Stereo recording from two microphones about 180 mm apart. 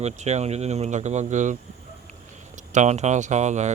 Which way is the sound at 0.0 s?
40° right (ahead or behind).